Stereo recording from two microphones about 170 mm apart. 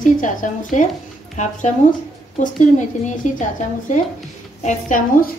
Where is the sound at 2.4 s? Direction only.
45° left (ahead or behind).